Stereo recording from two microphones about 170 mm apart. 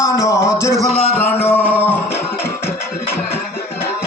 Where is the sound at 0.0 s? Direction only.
20° left (ahead or behind).